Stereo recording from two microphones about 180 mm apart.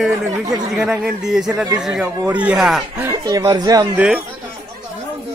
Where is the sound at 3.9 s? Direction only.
5° right (ahead or behind).